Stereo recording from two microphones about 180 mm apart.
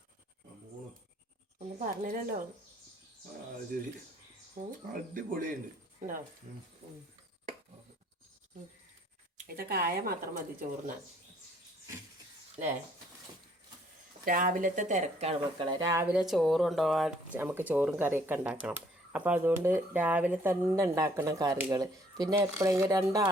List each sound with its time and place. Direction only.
1.5 s speech: 45° right (ahead or behind)
3.7 s speech: 55° right (ahead or behind)
9.5 s speech: 55° right (ahead or behind)
12.6 s speech: 40° right (ahead or behind)
14.3 s speech: 50° right (ahead or behind); by 16.0 s 15° right (ahead or behind)
16.1 s speech: centre (ahead or behind); by 23.3 s 20° right (ahead or behind)